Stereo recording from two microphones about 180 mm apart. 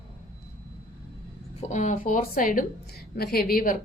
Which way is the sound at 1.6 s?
40° left (ahead or behind).